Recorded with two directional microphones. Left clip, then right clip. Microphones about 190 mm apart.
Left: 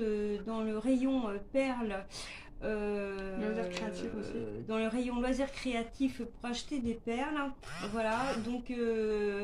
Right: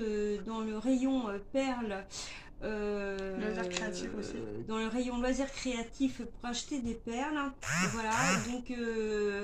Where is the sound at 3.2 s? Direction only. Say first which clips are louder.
Even; 45° right (ahead or behind).